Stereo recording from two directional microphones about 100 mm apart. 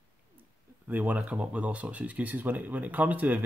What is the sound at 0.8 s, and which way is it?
Speech, 15° right (ahead or behind).